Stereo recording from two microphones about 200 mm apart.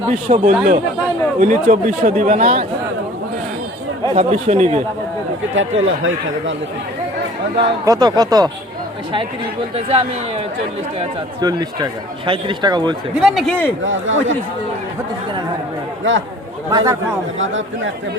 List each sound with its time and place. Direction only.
0.1 s speech: 40° right (ahead or behind)
4.1 s speech: 35° right (ahead or behind)
5.5 s speech: 75° right (ahead or behind)
7.9 s speech: 20° right (ahead or behind)
9.7 s speech: 30° right (ahead or behind)
13.1 s speech: centre (ahead or behind)
13.8 s speech: 75° right (ahead or behind)
16.7 s speech: 15° right (ahead or behind)
17.4 s speech: 70° right (ahead or behind)